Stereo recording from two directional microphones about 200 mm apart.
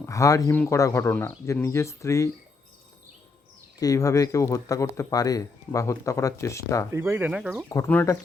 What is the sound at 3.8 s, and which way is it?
Speech, 15° left (ahead or behind).